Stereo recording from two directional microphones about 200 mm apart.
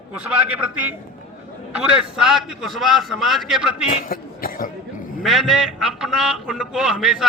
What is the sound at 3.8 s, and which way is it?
Speech, 30° left (ahead or behind).